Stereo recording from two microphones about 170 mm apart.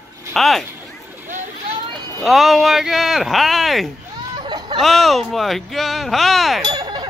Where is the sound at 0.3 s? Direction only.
Centre (ahead or behind).